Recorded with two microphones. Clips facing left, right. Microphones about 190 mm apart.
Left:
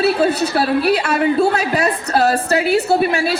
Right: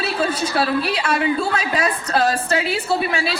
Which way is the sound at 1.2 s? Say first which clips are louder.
Left 5 dB; 45° left (ahead or behind).